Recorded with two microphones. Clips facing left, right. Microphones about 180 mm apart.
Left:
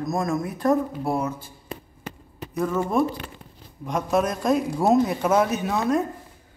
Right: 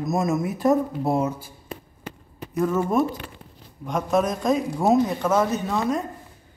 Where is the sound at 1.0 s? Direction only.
20° right (ahead or behind).